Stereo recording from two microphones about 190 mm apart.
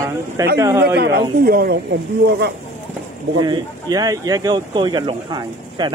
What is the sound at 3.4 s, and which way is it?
Speech, 20° right (ahead or behind).